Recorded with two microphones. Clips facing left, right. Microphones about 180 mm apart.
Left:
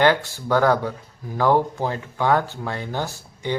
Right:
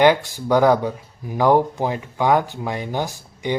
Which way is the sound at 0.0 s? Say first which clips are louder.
Right 3 dB; 15° right (ahead or behind).